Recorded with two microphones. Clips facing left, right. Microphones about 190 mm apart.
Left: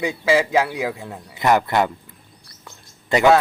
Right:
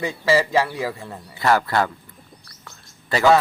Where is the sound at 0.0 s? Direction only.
10° left (ahead or behind).